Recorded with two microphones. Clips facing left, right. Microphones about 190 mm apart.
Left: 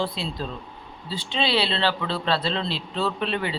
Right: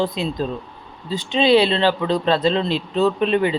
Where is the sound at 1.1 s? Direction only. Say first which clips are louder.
Right 10 dB; 45° right (ahead or behind).